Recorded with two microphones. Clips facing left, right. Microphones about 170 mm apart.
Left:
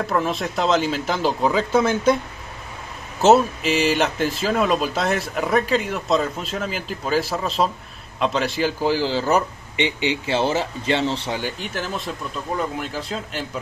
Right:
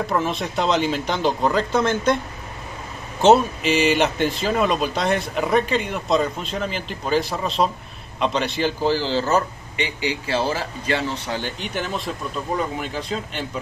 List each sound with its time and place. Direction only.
0.0 s speech: centre (ahead or behind)
3.2 s speech: centre (ahead or behind)
9.8 s speech: 25° left (ahead or behind)
11.3 s speech: 5° left (ahead or behind)